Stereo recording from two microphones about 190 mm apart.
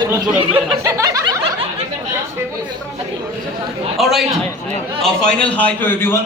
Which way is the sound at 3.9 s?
Centre (ahead or behind).